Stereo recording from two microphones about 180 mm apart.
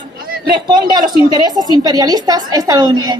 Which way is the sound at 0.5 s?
25° right (ahead or behind).